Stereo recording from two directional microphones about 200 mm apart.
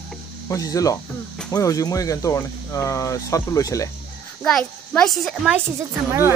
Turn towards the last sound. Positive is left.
turn(degrees=-10)  # may be behind; listen again after turning